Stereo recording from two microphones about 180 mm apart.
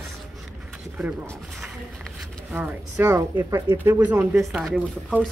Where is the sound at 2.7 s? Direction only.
10° right (ahead or behind).